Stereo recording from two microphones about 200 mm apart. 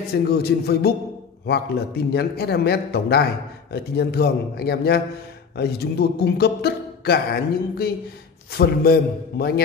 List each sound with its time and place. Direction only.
0.1 s a man's voice: 50° left (ahead or behind)
2.1 s a man's voice: 50° left (ahead or behind)